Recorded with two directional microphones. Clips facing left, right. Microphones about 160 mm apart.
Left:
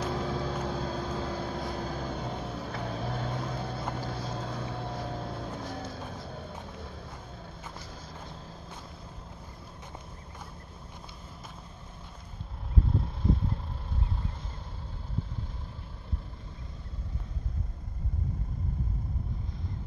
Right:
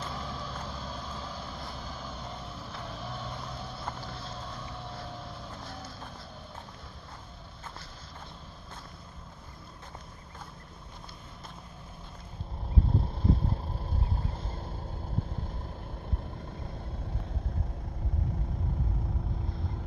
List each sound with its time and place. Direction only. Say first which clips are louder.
0.1 s vehicle: left 7 dB; 55° left (ahead or behind)